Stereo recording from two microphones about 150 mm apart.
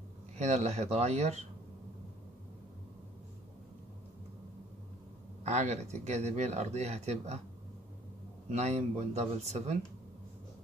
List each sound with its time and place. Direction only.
0.4 s speech: 50° right (ahead or behind)
5.4 s speech: 50° right (ahead or behind)
8.5 s speech: 50° right (ahead or behind)